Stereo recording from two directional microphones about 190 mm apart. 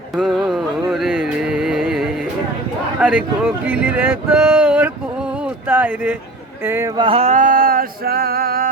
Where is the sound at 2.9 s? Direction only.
5° right (ahead or behind).